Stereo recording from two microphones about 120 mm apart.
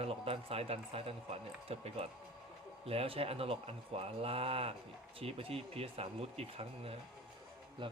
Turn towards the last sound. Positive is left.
turn(degrees=-55)  # may be behind; listen again after turning